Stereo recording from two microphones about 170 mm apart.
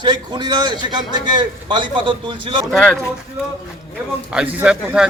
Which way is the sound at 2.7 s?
5° left (ahead or behind).